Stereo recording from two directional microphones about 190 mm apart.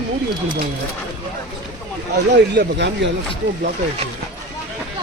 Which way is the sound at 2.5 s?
65° right (ahead or behind).